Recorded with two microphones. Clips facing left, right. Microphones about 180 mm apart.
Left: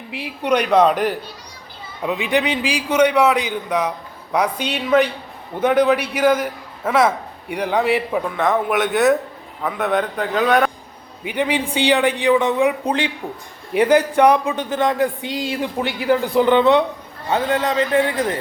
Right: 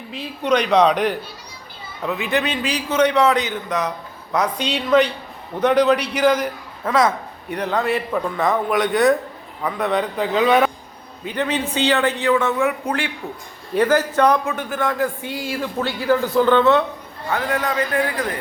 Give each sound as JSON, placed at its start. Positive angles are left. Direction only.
{"t": 0.2, "sound": "a man's voice", "side_deg": 10}
{"t": 2.0, "sound": "a man's voice", "side_deg": 15}
{"t": 8.2, "sound": "a man's voice", "side_deg": 0}
{"t": 11.2, "sound": "a man's voice", "side_deg": 15}